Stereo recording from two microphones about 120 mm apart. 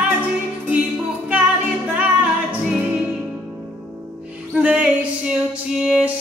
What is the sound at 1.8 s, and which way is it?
Music, 10° right (ahead or behind).